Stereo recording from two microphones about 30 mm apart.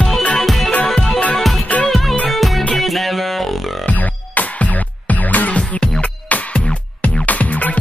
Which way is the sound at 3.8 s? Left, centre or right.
Left.